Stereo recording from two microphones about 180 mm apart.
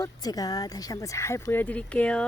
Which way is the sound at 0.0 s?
20° left (ahead or behind).